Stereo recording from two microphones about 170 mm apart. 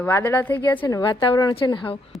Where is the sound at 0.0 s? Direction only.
15° left (ahead or behind).